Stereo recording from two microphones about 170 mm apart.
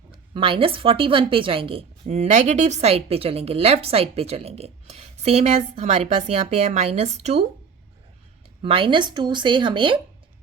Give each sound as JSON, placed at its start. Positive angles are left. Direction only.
{"t": 0.1, "sound": "speech", "side_deg": -30}
{"t": 8.6, "sound": "speech", "side_deg": -30}